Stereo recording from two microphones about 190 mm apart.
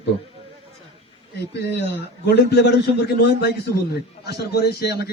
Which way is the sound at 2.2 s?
60° left (ahead or behind).